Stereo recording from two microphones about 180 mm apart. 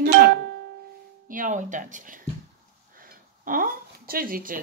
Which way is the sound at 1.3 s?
45° right (ahead or behind).